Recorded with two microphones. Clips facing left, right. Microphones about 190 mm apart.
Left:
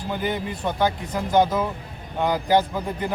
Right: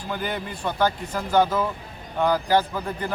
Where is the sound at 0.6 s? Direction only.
15° left (ahead or behind).